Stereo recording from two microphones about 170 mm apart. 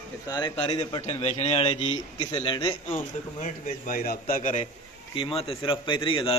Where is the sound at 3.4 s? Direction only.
50° left (ahead or behind).